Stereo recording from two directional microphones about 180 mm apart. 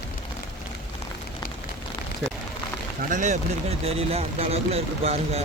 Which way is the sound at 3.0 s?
45° right (ahead or behind).